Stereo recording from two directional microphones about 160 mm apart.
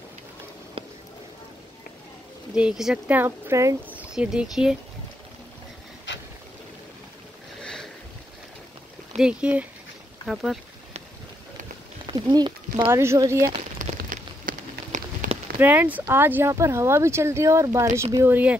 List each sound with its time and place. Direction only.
0.8 s a sound: 35° right (ahead or behind)
2.5 s speech: 5° right (ahead or behind)
4.1 s speech: 5° right (ahead or behind)
7.6 s boat: 5° left (ahead or behind)
9.2 s speech: 5° right (ahead or behind)
12.1 s speech: 25° right (ahead or behind)
13.9 s a sound: 60° right (ahead or behind)
15.6 s speech: 10° right (ahead or behind)